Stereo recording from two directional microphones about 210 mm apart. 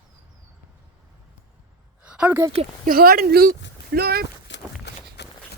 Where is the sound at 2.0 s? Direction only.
5° right (ahead or behind).